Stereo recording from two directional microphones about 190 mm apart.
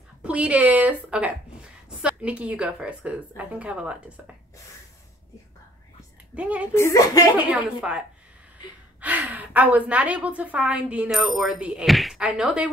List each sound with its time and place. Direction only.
0.2 s a woman's voice: 5° right (ahead or behind)
6.3 s a woman's voice: 5° right (ahead or behind)
6.7 s speech: 15° left (ahead or behind)
7.3 s a woman's voice: 5° right (ahead or behind)
9.0 s a woman's voice: 10° right (ahead or behind)